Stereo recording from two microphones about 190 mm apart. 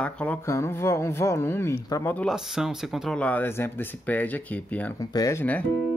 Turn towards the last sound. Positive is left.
turn(degrees=10)  # may be behind; listen again after turning